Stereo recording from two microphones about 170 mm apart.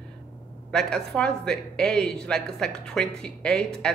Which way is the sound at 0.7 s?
5° left (ahead or behind).